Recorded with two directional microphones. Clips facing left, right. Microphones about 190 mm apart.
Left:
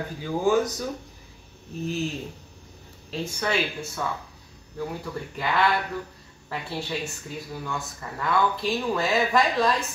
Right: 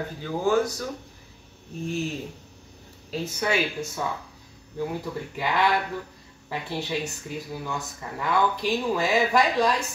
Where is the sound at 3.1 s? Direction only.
10° right (ahead or behind).